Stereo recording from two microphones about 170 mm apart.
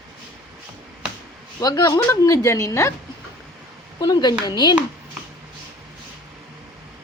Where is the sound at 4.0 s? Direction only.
25° left (ahead or behind).